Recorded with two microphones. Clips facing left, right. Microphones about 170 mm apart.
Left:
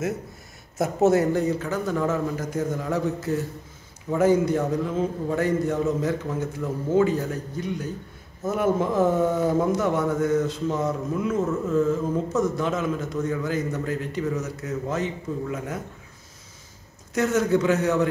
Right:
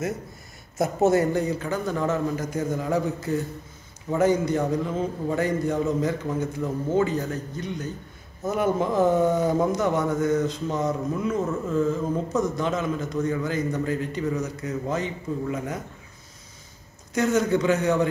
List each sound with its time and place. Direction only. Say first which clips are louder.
0.7 s a man's voice: left 1 dB; centre (ahead or behind)
17.1 s speech: even; 5° left (ahead or behind)